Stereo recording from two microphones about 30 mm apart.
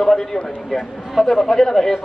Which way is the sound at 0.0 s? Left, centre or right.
Centre.